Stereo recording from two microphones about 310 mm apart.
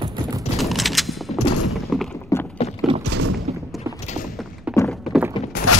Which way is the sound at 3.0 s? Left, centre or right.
Right.